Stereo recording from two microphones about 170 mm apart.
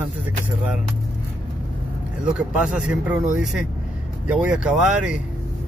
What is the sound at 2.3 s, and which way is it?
Speech, 5° right (ahead or behind).